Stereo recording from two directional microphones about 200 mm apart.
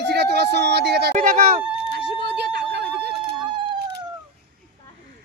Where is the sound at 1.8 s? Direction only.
55° right (ahead or behind).